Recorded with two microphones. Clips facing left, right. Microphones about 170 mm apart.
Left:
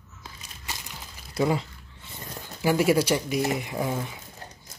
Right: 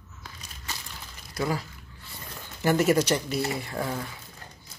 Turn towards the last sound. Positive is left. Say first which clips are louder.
# left 2 dB
turn(degrees=15)  # may be behind; listen again after turning